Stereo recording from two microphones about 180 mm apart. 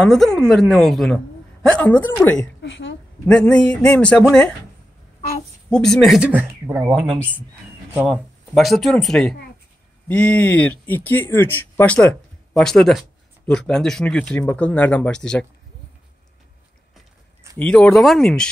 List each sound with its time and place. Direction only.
0.0 s speech: 5° left (ahead or behind)
2.6 s a sound: 90° left
3.3 s speech: 5° left (ahead or behind)
5.7 s speech: 5° left (ahead or behind)
17.6 s speech: 5° left (ahead or behind)